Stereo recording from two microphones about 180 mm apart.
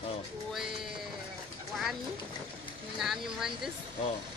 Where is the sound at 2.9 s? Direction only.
Centre (ahead or behind).